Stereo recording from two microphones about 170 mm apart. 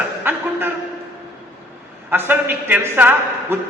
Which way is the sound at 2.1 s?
10° right (ahead or behind).